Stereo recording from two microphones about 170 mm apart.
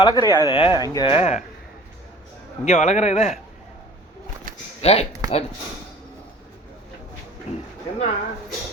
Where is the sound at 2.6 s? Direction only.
40° left (ahead or behind).